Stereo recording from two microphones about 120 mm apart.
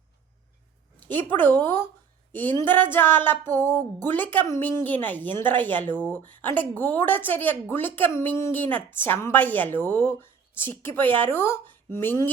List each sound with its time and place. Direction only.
0.9 s a woman's voice: 15° left (ahead or behind)